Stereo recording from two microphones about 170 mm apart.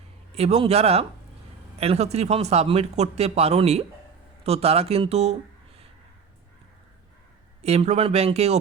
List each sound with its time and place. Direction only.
0.3 s speech: 35° right (ahead or behind)
7.6 s speech: 40° right (ahead or behind)